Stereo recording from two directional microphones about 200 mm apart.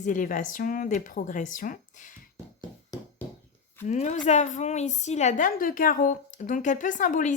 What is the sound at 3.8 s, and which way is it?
Speech, 35° left (ahead or behind).